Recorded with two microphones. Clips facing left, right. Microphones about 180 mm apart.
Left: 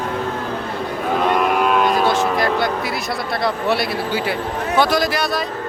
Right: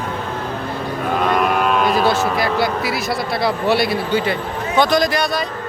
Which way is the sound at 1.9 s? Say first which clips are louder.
Even; 5° right (ahead or behind).